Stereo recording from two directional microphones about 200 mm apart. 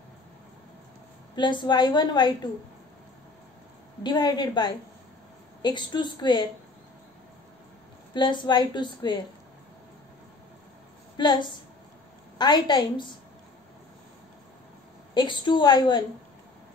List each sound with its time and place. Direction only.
1.3 s a woman's voice: 25° left (ahead or behind)
4.0 s a woman's voice: 20° left (ahead or behind)
8.1 s a woman's voice: 25° left (ahead or behind)
11.1 s a woman's voice: 20° left (ahead or behind)
15.1 s a woman's voice: 25° left (ahead or behind)